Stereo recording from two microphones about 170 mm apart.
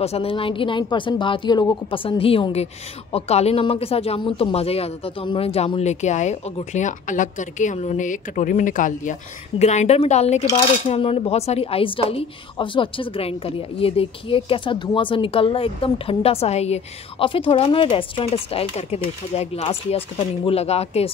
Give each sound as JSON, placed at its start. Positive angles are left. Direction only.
{"t": 0.0, "sound": "a woman's voice", "side_deg": 35}